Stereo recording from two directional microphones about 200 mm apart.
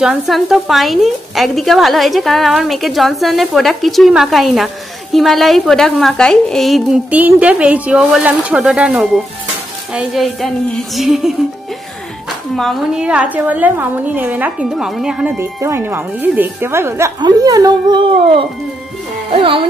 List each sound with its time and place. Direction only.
0.0 s speech: centre (ahead or behind)
12.5 s a woman's voice: centre (ahead or behind); by 19.6 s 25° right (ahead or behind)